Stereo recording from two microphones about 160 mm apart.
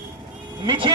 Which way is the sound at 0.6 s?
30° right (ahead or behind).